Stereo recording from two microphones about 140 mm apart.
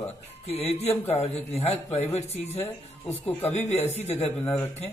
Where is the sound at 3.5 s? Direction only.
55° left (ahead or behind).